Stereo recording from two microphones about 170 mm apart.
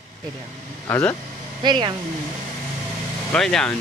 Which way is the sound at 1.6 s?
25° right (ahead or behind).